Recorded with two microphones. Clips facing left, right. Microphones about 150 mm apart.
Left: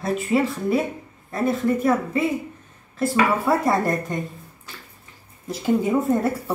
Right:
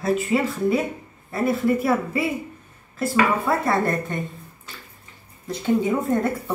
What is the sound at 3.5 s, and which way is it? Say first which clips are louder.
Speech: left 1 dB; 10° left (ahead or behind).